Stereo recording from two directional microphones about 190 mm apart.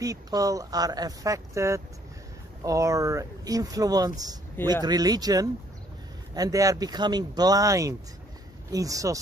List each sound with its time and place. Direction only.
0.0 s speech: 20° right (ahead or behind)